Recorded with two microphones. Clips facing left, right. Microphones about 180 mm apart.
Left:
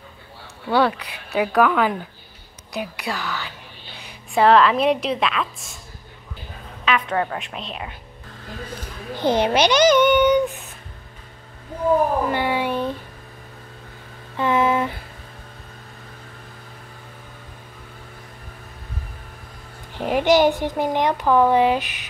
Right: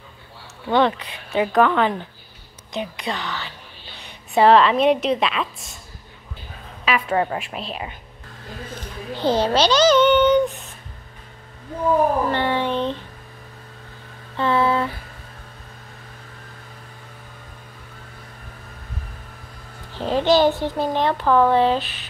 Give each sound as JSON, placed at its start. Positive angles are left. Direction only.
{"t": 0.7, "sound": "a woman's voice", "side_deg": 5}
{"t": 6.8, "sound": "a woman's voice", "side_deg": -5}
{"t": 9.1, "sound": "a child's voice", "side_deg": 15}
{"t": 12.3, "sound": "a sound", "side_deg": 10}
{"t": 14.3, "sound": "a sound", "side_deg": 15}
{"t": 19.9, "sound": "speech", "side_deg": 15}